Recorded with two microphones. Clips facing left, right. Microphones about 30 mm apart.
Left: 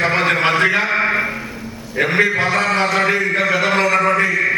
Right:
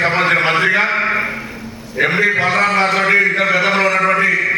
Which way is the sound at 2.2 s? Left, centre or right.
Right.